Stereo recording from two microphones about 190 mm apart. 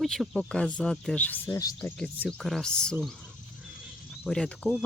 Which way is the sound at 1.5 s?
20° left (ahead or behind).